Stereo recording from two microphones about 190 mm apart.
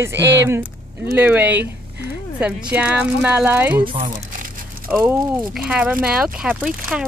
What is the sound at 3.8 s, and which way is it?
Speech, 25° right (ahead or behind).